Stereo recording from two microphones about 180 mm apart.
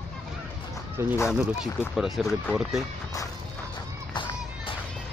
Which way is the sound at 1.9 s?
Centre (ahead or behind).